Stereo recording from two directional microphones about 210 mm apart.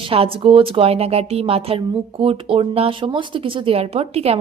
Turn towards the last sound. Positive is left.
turn(degrees=-30)  # may be behind; listen again after turning